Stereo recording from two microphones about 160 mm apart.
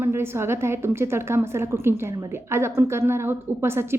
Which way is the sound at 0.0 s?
15° right (ahead or behind).